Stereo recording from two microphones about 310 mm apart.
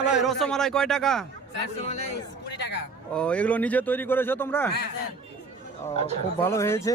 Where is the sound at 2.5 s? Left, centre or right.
Left.